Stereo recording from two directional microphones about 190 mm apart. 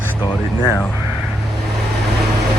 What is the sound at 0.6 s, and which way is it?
Speech, 15° left (ahead or behind).